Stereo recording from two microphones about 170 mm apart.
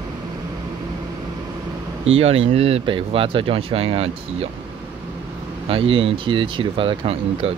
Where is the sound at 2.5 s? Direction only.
35° right (ahead or behind).